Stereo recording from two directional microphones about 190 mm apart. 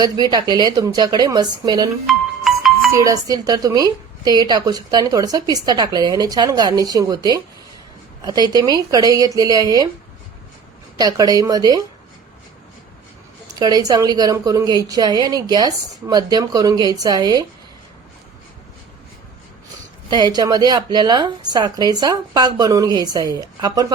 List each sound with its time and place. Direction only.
0.0 s speech: 20° right (ahead or behind)
2.0 s music: centre (ahead or behind)
2.9 s speech: 15° right (ahead or behind)
10.9 s speech: 20° right (ahead or behind)
13.6 s speech: 20° right (ahead or behind)
20.1 s speech: 20° right (ahead or behind)